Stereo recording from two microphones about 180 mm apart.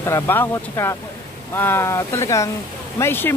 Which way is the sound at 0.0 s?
15° left (ahead or behind).